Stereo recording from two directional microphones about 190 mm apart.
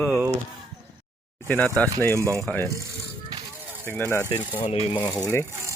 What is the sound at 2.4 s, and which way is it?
Speech, 5° left (ahead or behind).